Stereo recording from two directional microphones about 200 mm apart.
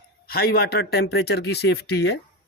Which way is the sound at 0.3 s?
50° left (ahead or behind).